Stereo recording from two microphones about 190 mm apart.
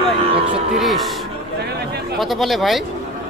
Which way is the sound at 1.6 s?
60° right (ahead or behind).